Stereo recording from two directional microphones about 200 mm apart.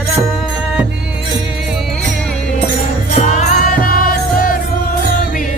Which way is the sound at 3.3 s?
45° left (ahead or behind).